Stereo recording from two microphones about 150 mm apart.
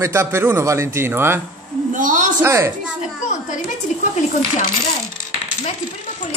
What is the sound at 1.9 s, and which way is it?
Speech, 60° right (ahead or behind).